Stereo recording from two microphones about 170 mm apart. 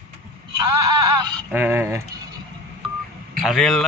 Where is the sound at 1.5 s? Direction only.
10° right (ahead or behind).